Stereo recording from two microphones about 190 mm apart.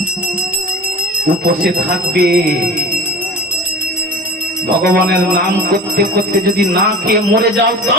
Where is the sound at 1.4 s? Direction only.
45° right (ahead or behind).